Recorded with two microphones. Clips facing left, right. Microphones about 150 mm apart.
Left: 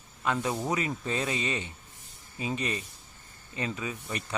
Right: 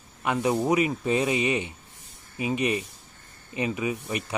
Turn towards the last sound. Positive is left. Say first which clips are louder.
# right 7 dB
turn(degrees=-15)  # may be behind; listen again after turning